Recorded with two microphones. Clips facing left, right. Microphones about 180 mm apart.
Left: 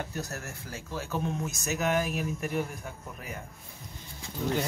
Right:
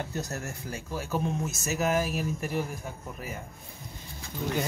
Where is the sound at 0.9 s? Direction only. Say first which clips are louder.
Right 2 dB; 5° right (ahead or behind).